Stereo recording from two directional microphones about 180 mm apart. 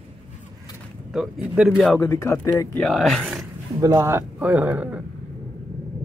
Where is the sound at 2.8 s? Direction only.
Centre (ahead or behind).